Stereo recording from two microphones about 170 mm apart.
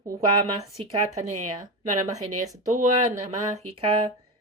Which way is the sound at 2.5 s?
45° right (ahead or behind).